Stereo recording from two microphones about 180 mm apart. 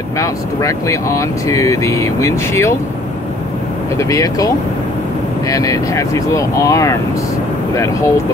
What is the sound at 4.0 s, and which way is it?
Speech, 20° left (ahead or behind).